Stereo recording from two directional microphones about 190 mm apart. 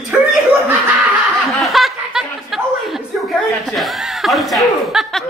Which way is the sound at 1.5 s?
Centre (ahead or behind).